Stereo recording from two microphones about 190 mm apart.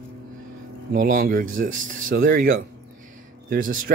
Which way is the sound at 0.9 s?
45° right (ahead or behind).